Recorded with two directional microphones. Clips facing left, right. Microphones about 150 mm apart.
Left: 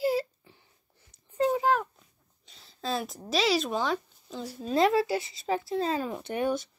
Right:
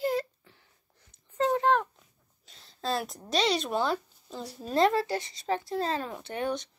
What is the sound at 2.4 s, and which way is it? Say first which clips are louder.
Speech: right 1 dB; centre (ahead or behind).